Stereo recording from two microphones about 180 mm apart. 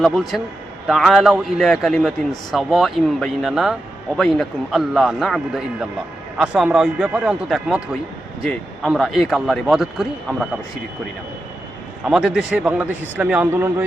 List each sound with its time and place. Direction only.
0.0 s a man's voice: centre (ahead or behind)
12.0 s a man's voice: 5° right (ahead or behind)